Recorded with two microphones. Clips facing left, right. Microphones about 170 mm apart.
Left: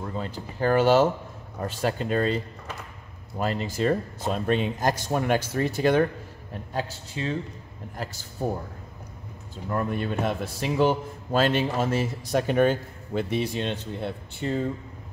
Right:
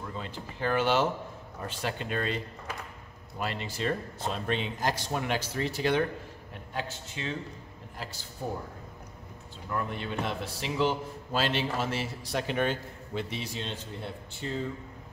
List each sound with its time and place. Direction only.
0.0 s a man's voice: 40° left (ahead or behind)
9.7 s a man's voice: 45° left (ahead or behind); by 14.6 s 60° left (ahead or behind)